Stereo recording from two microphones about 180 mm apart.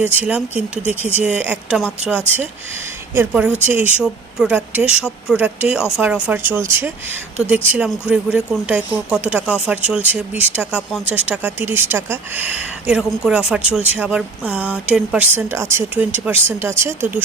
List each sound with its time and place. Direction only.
0.0 s speech: 10° right (ahead or behind)